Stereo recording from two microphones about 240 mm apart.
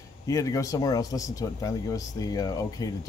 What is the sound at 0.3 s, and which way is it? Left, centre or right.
Speech, centre.